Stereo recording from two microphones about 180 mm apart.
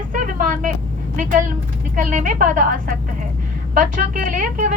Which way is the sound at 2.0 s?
45° right (ahead or behind).